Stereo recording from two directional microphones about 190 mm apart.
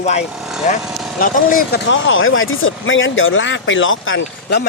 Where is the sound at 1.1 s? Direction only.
45° left (ahead or behind).